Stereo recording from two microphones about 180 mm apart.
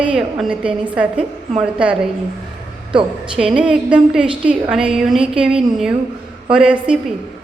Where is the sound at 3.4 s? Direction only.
5° right (ahead or behind).